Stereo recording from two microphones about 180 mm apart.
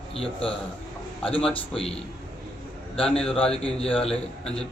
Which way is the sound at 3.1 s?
5° left (ahead or behind).